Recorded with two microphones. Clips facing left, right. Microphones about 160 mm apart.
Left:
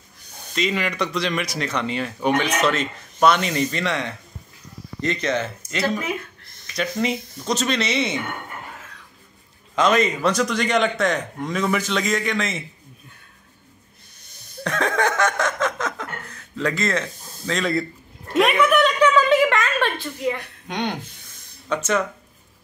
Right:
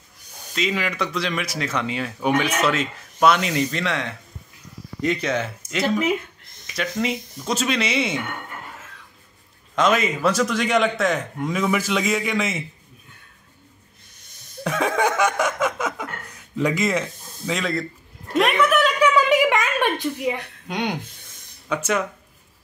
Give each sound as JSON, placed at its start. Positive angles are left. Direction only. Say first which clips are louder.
{"t": 0.6, "sound": "speech", "louder": "left 1 dB", "side_deg": 0}
{"t": 5.9, "sound": "speech", "louder": "right 5 dB", "side_deg": -20}
{"t": 6.7, "sound": "speech", "louder": "left 1 dB", "side_deg": 0}
{"t": 9.8, "sound": "speech", "louder": "left 1 dB", "side_deg": -5}
{"t": 14.6, "sound": "snicker", "louder": "right 1 dB", "side_deg": -5}
{"t": 17.5, "sound": "speech", "louder": "left 2 dB", "side_deg": 0}
{"t": 18.3, "sound": "a sound", "louder": "left 1 dB", "side_deg": 0}
{"t": 20.6, "sound": "speech", "louder": "even", "side_deg": -10}